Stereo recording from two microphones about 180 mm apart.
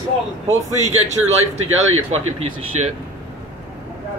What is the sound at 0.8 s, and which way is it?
A man's voice, 40° right (ahead or behind).